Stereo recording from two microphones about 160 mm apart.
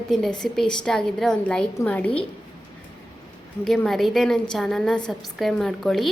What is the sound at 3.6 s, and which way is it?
A woman's voice, centre (ahead or behind).